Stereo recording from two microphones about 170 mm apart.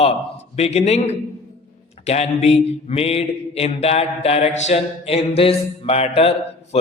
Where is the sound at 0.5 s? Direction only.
40° left (ahead or behind).